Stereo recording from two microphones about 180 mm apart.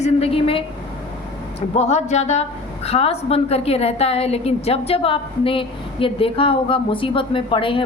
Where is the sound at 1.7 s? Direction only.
40° left (ahead or behind).